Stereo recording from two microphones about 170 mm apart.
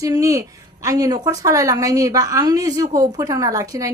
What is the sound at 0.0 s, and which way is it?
A woman's voice, 20° right (ahead or behind).